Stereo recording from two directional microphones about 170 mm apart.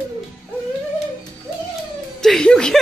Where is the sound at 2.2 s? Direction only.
5° left (ahead or behind).